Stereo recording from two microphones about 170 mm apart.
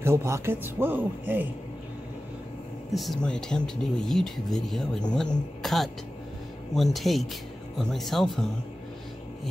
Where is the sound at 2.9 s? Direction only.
Centre (ahead or behind).